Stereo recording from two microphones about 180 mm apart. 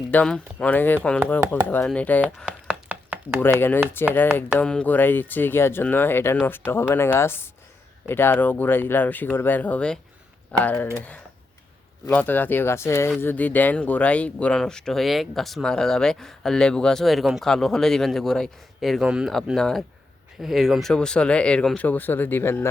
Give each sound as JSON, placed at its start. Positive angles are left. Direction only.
{"t": 0.1, "sound": "speech", "side_deg": 5}
{"t": 2.5, "sound": "chopping", "side_deg": -10}
{"t": 4.0, "sound": "speech", "side_deg": 10}
{"t": 12.0, "sound": "speech", "side_deg": 10}